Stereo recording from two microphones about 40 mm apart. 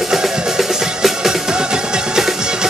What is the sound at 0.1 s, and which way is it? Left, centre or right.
Music, centre.